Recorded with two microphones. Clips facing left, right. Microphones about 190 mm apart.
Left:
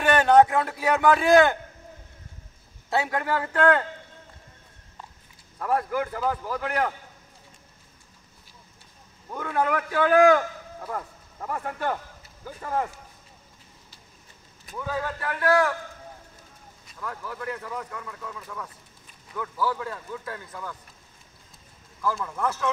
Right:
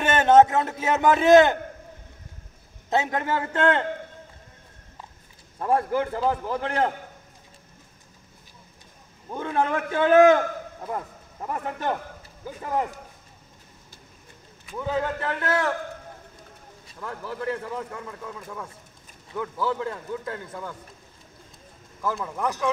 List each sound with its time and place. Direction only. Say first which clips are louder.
0.0 s a man's voice: right 1 dB; 20° right (ahead or behind)
2.9 s a man's voice: right 1 dB; 20° right (ahead or behind)
5.6 s a man's voice: right 3 dB; 25° right (ahead or behind)
9.3 s a man's voice: right 1 dB; 25° right (ahead or behind)
14.8 s a man's voice: right 4 dB; 20° right (ahead or behind)
17.0 s a man's voice: right 3 dB; 30° right (ahead or behind)
22.0 s speech: even; 20° right (ahead or behind)